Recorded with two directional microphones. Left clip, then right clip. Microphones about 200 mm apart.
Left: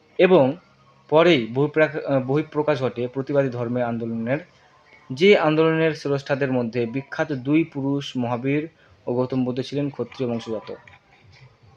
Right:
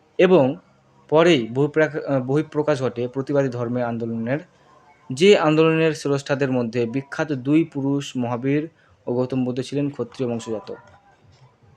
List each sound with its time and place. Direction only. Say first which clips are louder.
0.2 s speech: even; 10° right (ahead or behind)